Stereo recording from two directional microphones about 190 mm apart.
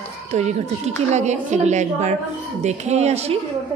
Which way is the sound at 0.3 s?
35° right (ahead or behind).